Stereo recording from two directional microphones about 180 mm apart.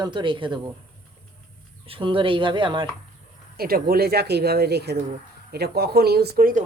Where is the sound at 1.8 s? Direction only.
30° right (ahead or behind).